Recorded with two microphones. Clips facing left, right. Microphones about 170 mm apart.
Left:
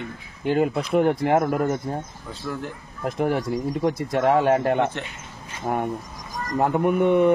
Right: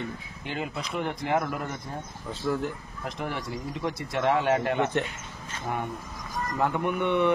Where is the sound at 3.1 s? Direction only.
50° left (ahead or behind).